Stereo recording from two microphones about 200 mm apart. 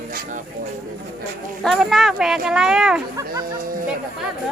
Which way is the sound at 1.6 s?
Centre (ahead or behind).